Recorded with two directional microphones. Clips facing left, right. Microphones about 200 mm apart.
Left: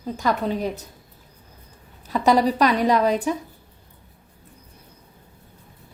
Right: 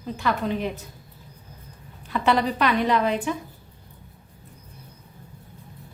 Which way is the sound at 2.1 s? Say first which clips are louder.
Left 4 dB; 40° left (ahead or behind).